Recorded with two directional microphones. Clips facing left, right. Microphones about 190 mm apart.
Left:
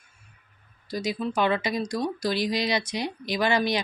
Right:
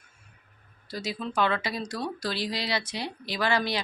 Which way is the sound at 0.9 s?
15° left (ahead or behind).